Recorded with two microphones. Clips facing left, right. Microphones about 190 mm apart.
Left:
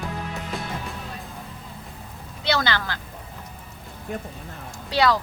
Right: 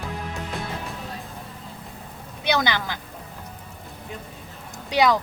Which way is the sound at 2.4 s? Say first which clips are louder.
Right 1 dB; 15° right (ahead or behind).